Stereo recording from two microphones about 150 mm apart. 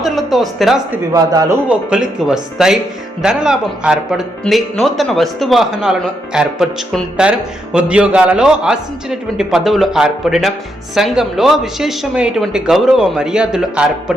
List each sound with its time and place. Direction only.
0.0 s speech: centre (ahead or behind)
1.1 s speech: 25° right (ahead or behind)
1.6 s speech: 5° right (ahead or behind)